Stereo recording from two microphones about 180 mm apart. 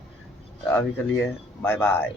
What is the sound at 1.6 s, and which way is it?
Speech, 10° left (ahead or behind).